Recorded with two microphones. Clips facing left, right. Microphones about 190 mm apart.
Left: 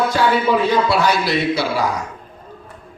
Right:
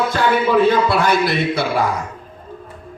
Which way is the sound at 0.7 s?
55° right (ahead or behind).